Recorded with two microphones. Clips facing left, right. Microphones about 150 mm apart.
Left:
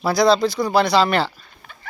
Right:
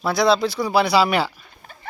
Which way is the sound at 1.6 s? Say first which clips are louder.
Right 1 dB; 40° right (ahead or behind).